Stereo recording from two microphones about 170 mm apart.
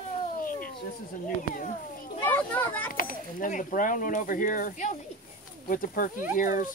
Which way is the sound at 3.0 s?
55° left (ahead or behind).